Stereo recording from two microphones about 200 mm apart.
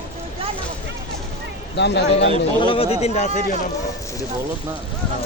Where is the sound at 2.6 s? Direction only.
30° left (ahead or behind).